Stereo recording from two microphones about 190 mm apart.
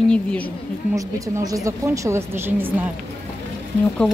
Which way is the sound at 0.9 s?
20° right (ahead or behind).